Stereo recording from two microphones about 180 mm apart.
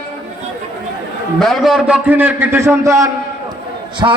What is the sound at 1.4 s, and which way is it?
A man's voice, centre (ahead or behind).